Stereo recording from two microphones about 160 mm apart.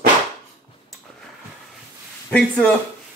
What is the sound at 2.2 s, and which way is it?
Speech, 5° left (ahead or behind).